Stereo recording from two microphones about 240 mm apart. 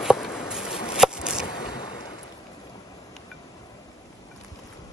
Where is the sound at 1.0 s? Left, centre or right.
Centre.